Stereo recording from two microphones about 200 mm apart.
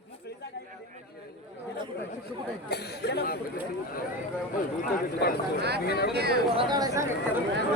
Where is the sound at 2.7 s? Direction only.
55° left (ahead or behind).